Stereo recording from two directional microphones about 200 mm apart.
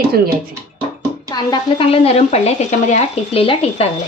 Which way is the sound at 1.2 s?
20° left (ahead or behind).